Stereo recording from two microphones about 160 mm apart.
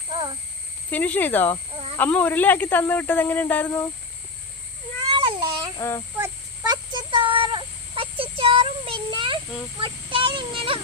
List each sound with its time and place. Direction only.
0.9 s speech: 10° left (ahead or behind)
5.0 s babbling: 30° right (ahead or behind)
6.1 s child singing: 25° right (ahead or behind)
9.8 s speech: 30° right (ahead or behind)